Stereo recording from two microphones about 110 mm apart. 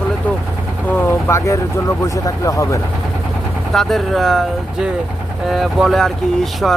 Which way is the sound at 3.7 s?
Centre (ahead or behind).